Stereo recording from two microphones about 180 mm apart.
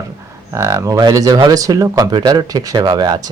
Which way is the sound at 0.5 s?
15° right (ahead or behind).